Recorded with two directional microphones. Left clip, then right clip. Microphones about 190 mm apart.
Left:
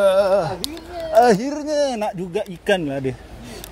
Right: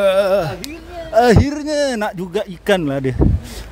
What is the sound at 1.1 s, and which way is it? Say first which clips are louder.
Speech: right 2 dB; 25° right (ahead or behind).